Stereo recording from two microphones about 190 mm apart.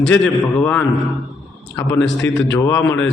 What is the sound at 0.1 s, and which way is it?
Speech, 5° left (ahead or behind).